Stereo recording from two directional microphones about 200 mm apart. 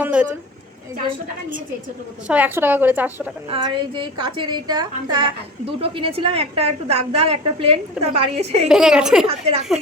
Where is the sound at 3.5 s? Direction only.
25° right (ahead or behind).